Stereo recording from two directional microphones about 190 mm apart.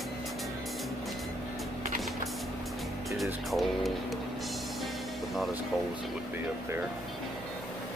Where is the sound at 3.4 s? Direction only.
Centre (ahead or behind).